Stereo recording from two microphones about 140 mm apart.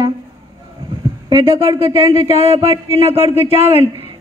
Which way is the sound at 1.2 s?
35° right (ahead or behind).